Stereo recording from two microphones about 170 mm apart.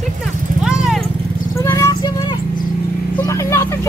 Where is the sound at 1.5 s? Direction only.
15° left (ahead or behind).